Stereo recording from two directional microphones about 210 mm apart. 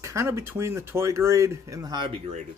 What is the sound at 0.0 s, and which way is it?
Speech, 15° right (ahead or behind).